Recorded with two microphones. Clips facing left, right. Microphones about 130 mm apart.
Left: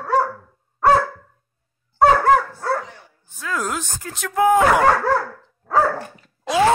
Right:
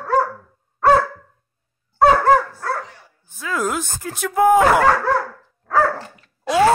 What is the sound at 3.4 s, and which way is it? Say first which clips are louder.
Speech: right 3 dB; 10° right (ahead or behind).